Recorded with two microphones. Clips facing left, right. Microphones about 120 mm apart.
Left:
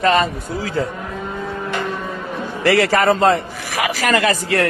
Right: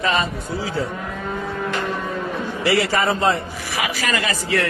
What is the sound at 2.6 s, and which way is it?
A man's voice, 50° left (ahead or behind).